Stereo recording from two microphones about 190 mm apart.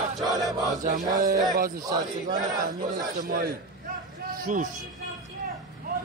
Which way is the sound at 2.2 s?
45° right (ahead or behind).